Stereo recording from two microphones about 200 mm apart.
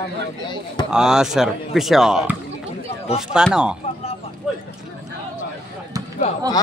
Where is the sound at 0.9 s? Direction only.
5° right (ahead or behind).